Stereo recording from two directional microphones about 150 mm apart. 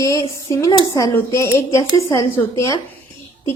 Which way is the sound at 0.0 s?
20° left (ahead or behind).